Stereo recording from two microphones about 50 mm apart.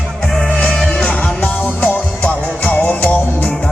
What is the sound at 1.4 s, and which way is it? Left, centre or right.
Music, left.